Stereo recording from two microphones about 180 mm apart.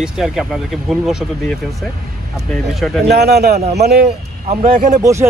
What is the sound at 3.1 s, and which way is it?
Speech, 65° right (ahead or behind).